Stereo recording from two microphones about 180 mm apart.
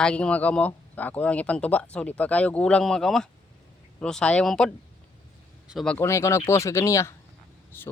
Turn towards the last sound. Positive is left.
turn(degrees=15)  # may be behind; listen again after turning